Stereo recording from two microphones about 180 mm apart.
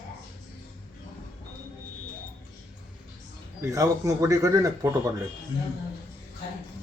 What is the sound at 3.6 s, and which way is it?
A man's voice, 20° right (ahead or behind).